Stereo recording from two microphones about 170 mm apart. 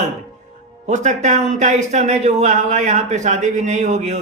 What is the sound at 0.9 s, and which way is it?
Speech, 45° right (ahead or behind).